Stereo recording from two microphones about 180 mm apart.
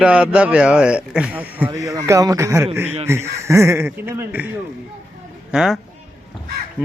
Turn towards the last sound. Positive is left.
turn(degrees=-10)  # may be behind; listen again after turning